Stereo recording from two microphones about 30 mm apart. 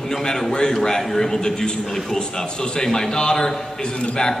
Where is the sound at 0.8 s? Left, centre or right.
Centre.